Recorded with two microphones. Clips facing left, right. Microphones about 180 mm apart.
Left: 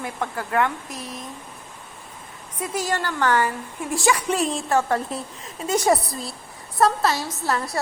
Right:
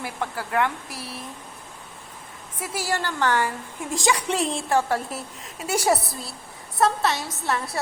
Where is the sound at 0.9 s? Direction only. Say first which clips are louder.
Left 2 dB; 15° left (ahead or behind).